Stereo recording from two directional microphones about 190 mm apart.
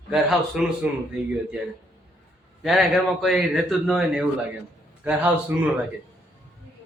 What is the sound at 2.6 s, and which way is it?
A man's voice, centre (ahead or behind).